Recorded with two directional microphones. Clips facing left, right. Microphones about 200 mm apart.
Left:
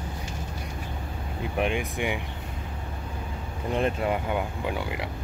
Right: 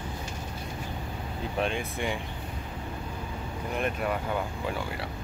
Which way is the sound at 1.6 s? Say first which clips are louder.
Left 3 dB; 15° left (ahead or behind).